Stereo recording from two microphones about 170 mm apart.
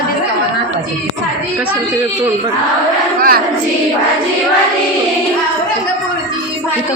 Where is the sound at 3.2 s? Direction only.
55° right (ahead or behind).